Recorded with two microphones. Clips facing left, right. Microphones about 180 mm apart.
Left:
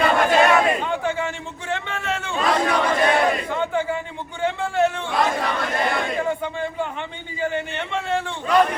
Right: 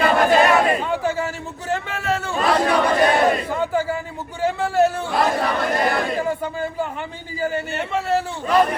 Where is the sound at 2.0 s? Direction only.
35° right (ahead or behind).